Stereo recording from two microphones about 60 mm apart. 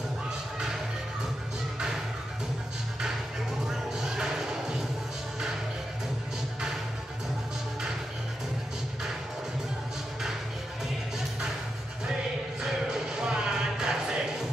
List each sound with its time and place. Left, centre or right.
3.6 s music: centre
12.6 s music: centre